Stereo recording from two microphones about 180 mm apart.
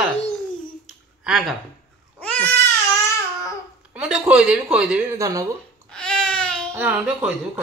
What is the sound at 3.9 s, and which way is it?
A woman's voice, 5° right (ahead or behind).